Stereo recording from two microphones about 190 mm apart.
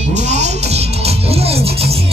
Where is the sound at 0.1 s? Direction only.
35° right (ahead or behind).